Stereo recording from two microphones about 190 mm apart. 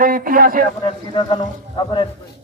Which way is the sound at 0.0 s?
50° right (ahead or behind).